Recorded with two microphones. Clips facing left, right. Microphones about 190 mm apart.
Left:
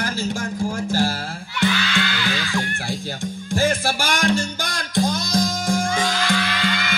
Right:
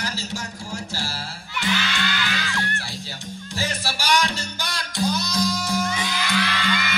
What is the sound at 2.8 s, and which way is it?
Music, 50° left (ahead or behind).